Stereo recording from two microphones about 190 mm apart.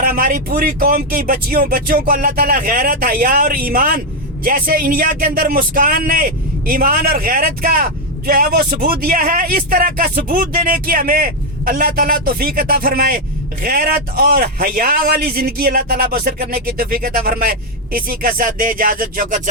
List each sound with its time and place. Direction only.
0.0 s speech: 50° right (ahead or behind)